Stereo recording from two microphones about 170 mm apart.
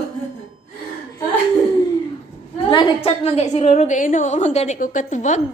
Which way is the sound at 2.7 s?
35° left (ahead or behind).